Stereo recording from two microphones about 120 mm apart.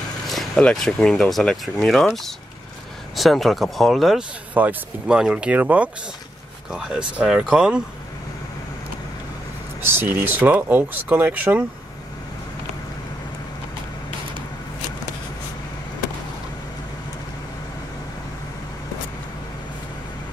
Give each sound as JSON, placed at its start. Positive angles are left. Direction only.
{"t": 0.3, "sound": "speech", "side_deg": 5}
{"t": 9.8, "sound": "speech", "side_deg": -20}